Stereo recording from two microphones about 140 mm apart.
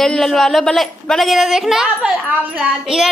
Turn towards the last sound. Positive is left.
turn(degrees=-5)  # may be behind; listen again after turning